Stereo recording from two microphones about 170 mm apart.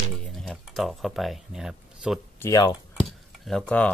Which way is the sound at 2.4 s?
20° left (ahead or behind).